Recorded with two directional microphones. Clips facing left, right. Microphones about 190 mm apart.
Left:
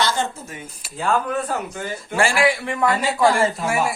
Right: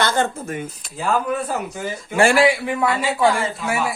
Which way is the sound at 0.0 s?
55° right (ahead or behind).